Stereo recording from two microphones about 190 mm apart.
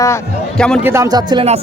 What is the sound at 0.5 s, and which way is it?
Speech, 5° left (ahead or behind).